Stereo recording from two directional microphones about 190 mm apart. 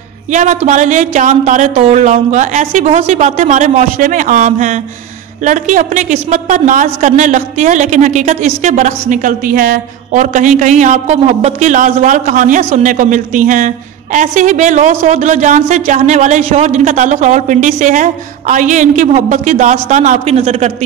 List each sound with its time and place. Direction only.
0.3 s a woman's voice: 40° right (ahead or behind)